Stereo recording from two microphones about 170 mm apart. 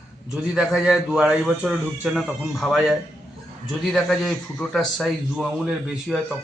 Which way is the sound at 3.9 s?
Centre (ahead or behind).